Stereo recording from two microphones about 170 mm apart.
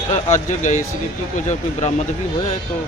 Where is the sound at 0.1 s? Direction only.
45° left (ahead or behind).